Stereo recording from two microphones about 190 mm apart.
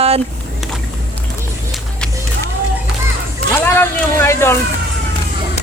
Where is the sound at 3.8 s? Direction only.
10° left (ahead or behind).